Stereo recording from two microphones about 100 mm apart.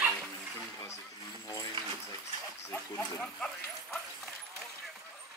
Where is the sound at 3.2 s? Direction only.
5° left (ahead or behind).